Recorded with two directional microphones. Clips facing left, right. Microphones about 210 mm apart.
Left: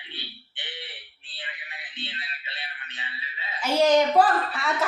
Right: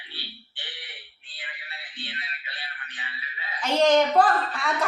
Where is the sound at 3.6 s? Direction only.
5° left (ahead or behind).